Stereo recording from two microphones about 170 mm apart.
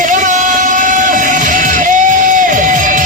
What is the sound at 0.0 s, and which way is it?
Music, 45° right (ahead or behind).